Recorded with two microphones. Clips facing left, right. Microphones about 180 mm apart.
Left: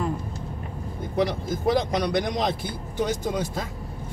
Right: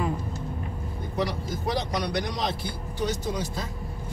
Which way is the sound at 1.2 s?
50° left (ahead or behind).